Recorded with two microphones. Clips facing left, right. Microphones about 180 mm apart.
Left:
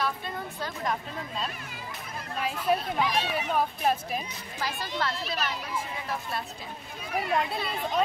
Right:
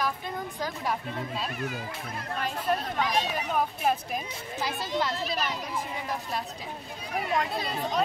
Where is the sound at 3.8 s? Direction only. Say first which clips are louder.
Even; centre (ahead or behind).